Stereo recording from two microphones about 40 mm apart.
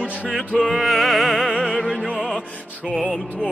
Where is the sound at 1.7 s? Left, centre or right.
Left.